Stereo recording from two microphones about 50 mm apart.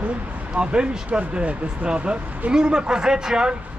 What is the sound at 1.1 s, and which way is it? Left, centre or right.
Speech, right.